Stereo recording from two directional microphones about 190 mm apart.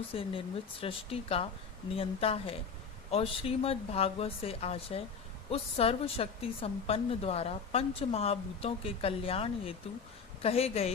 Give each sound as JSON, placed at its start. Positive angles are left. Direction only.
{"t": 0.1, "sound": "a woman's voice", "side_deg": 30}